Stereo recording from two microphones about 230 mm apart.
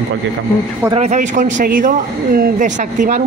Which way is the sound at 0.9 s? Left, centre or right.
Right.